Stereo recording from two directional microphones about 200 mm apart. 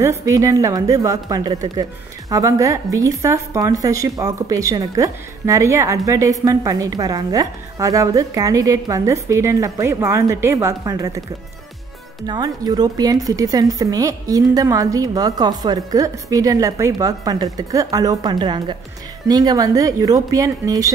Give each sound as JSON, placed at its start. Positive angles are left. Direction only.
{"t": 0.0, "sound": "a woman's voice", "side_deg": -15}
{"t": 12.3, "sound": "a woman's voice", "side_deg": -20}